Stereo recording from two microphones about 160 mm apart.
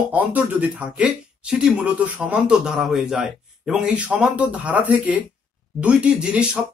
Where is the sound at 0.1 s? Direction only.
10° right (ahead or behind).